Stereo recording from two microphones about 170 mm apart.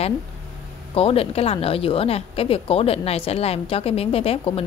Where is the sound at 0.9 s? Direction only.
35° left (ahead or behind).